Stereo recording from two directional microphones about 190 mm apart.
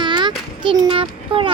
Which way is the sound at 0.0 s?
25° right (ahead or behind).